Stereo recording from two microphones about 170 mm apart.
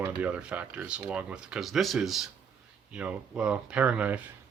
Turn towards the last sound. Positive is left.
turn(degrees=-5)  # may be behind; listen again after turning